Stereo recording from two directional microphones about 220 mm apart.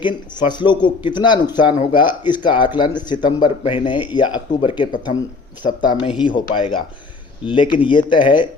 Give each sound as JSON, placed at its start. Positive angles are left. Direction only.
{"t": 0.0, "sound": "speech", "side_deg": 20}